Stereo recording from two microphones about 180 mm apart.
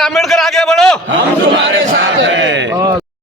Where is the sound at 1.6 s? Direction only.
90° right.